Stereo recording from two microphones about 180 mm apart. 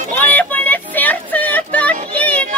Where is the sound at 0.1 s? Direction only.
10° left (ahead or behind).